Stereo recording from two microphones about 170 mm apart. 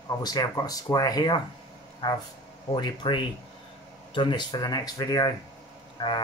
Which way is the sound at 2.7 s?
25° left (ahead or behind).